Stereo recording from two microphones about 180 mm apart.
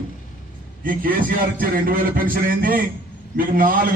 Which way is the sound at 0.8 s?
50° right (ahead or behind).